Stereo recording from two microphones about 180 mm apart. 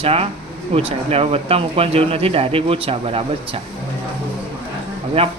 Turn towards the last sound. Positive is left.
turn(degrees=-35)  # may be behind; listen again after turning